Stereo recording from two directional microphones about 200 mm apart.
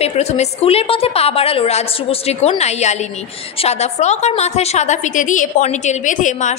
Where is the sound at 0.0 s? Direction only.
30° left (ahead or behind).